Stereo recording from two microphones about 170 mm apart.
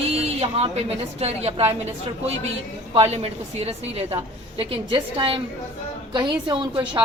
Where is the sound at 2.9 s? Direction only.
35° right (ahead or behind).